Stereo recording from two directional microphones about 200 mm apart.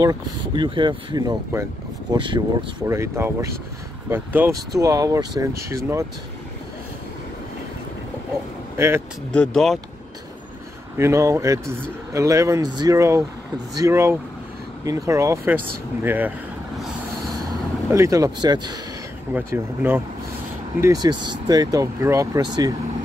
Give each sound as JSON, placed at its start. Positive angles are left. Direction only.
{"t": 0.0, "sound": "speech", "side_deg": -20}
{"t": 8.7, "sound": "speech", "side_deg": -10}
{"t": 9.3, "sound": "speech", "side_deg": 5}
{"t": 11.0, "sound": "speech", "side_deg": -15}
{"t": 17.5, "sound": "speech", "side_deg": -15}
{"t": 19.3, "sound": "speech", "side_deg": -10}